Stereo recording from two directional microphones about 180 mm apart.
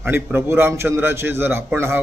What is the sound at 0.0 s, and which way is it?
A man's voice, 15° right (ahead or behind).